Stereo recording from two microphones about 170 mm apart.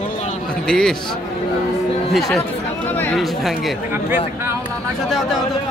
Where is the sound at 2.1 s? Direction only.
Centre (ahead or behind).